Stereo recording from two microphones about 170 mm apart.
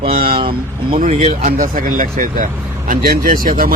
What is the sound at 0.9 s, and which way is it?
Speech, 45° right (ahead or behind).